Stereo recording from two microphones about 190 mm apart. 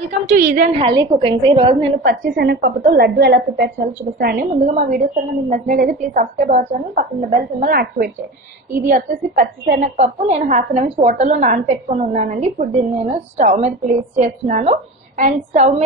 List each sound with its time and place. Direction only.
0.3 s a woman's voice: 50° right (ahead or behind)
0.7 s a woman's voice: 30° right (ahead or behind)
2.0 s a woman's voice: 55° right (ahead or behind)
4.6 s a woman's voice: 35° right (ahead or behind)
5.5 s a woman's voice: 45° right (ahead or behind)